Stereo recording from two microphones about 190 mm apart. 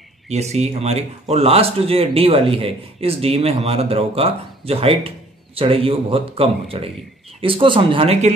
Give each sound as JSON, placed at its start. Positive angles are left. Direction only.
{"t": 0.3, "sound": "speech", "side_deg": -35}